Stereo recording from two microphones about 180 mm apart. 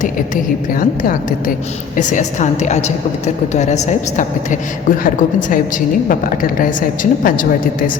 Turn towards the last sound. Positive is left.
turn(degrees=50)  # may be behind; listen again after turning